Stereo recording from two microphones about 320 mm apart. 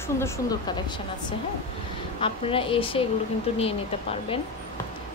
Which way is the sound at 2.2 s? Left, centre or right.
Centre.